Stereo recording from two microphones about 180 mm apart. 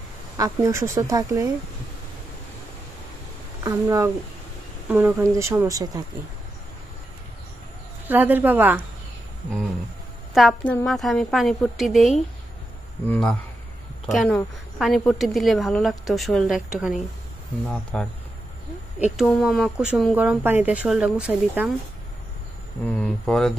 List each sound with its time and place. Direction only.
0.4 s speech: 15° right (ahead or behind)
3.6 s speech: 15° right (ahead or behind)
8.1 s speech: 10° right (ahead or behind)
10.3 s a woman's voice: 5° left (ahead or behind)
19.1 s a woman's voice: centre (ahead or behind)
22.8 s a woman's voice: 5° left (ahead or behind)